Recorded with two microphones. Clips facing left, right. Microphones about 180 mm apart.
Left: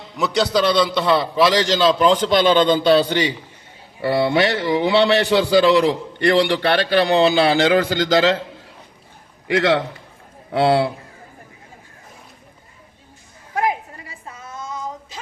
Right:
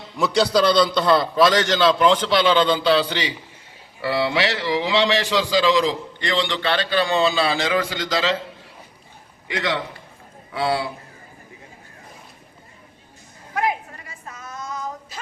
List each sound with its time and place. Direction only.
0.2 s a man's voice: centre (ahead or behind)
1.6 s a man's voice: 35° left (ahead or behind); by 8.4 s 60° left (ahead or behind)
9.5 s a man's voice: 80° left
10.5 s a man's voice: 60° left (ahead or behind)
14.3 s a sound: 25° left (ahead or behind)